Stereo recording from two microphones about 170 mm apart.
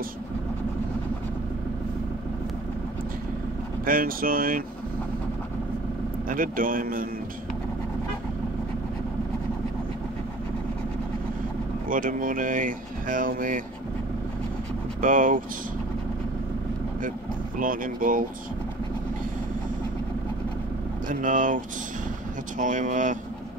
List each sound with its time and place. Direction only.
3.8 s speech: 55° right (ahead or behind)
6.2 s speech: 55° right (ahead or behind)
11.9 s speech: 55° right (ahead or behind)
15.0 s speech: 50° right (ahead or behind)
17.6 s speech: 55° right (ahead or behind)
21.1 s speech: 50° right (ahead or behind)
22.6 s speech: 50° right (ahead or behind)